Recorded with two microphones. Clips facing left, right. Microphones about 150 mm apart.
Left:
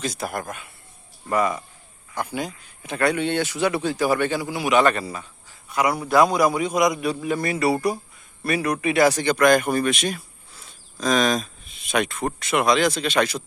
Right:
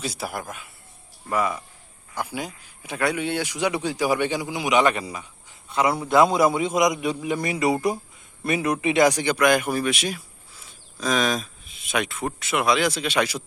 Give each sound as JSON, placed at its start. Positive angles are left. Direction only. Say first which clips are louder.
{"t": 0.0, "sound": "speech", "louder": "left 2 dB", "side_deg": -5}
{"t": 5.7, "sound": "a man's voice", "louder": "even", "side_deg": -25}